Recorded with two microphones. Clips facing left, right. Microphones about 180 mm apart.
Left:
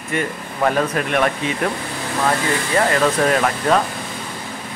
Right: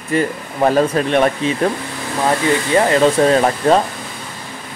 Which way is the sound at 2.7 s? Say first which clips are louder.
Right 4 dB; 25° right (ahead or behind).